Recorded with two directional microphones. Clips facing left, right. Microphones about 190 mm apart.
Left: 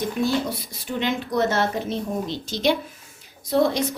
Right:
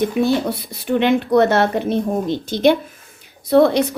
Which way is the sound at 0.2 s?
60° right (ahead or behind).